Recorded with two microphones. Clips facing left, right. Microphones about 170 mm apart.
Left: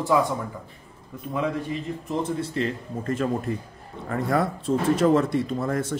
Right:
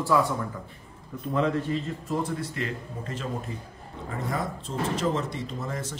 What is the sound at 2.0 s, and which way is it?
Speech, 30° left (ahead or behind).